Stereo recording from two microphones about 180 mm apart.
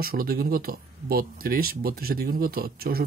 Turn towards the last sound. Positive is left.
turn(degrees=-60)  # may be behind; listen again after turning